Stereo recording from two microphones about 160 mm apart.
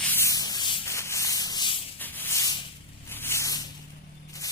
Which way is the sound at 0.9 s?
20° left (ahead or behind).